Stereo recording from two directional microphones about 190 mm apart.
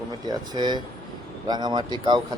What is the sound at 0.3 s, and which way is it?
Speech, 20° right (ahead or behind).